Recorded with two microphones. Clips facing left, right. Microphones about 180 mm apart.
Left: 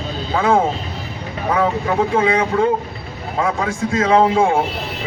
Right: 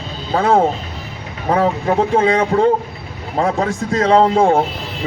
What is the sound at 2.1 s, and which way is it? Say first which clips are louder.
Speech: right 2 dB; 40° right (ahead or behind).